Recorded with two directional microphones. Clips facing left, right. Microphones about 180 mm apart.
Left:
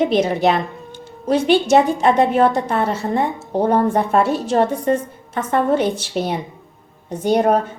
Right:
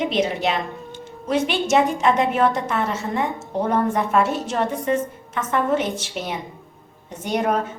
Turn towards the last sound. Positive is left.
turn(degrees=35)  # may be behind; listen again after turning